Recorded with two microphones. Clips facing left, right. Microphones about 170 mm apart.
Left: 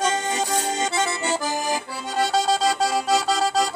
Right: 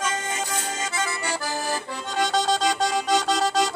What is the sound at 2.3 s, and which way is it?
Music, 5° left (ahead or behind).